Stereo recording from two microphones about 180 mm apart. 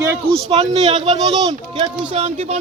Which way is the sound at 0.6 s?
35° right (ahead or behind).